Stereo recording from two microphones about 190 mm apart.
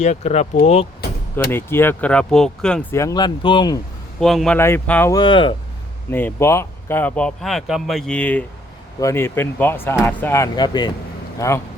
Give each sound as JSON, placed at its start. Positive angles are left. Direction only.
{"t": 0.0, "sound": "speech", "side_deg": 35}
{"t": 1.5, "sound": "speech", "side_deg": 10}
{"t": 2.9, "sound": "speech", "side_deg": 15}
{"t": 4.2, "sound": "speech", "side_deg": 0}
{"t": 5.1, "sound": "speech", "side_deg": 25}
{"t": 6.1, "sound": "speech", "side_deg": 10}